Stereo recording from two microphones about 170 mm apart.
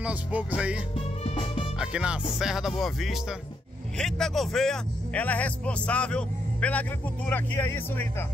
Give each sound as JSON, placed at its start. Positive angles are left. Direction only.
{"t": 0.0, "sound": "music", "side_deg": -10}
{"t": 0.9, "sound": "music", "side_deg": 35}
{"t": 1.8, "sound": "speech", "side_deg": -5}